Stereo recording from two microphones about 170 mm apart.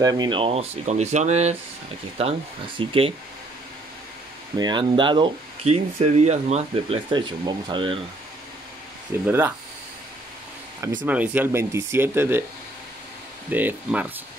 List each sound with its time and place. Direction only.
0.0 s speech: 25° right (ahead or behind); by 1.6 s 40° right (ahead or behind)
2.8 s speech: 30° right (ahead or behind)
4.6 s speech: 25° right (ahead or behind)
9.2 s speech: 10° right (ahead or behind)
11.1 s speech: 10° right (ahead or behind)
13.5 s speech: 10° right (ahead or behind)